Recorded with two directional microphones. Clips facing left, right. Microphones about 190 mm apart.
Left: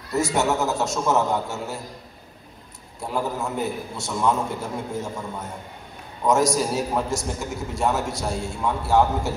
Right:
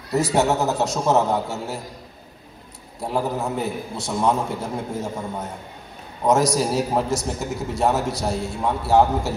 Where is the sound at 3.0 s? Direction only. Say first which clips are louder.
Right 3 dB; 35° right (ahead or behind).